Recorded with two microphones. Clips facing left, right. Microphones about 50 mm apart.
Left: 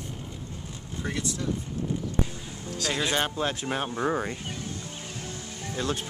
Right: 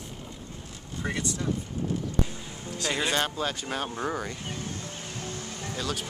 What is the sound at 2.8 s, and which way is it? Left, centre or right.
Speech, centre.